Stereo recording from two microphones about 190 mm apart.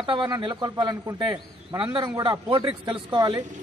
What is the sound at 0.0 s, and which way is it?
A man's voice, 25° right (ahead or behind).